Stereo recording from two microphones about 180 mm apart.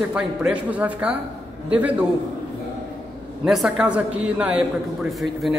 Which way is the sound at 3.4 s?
5° right (ahead or behind).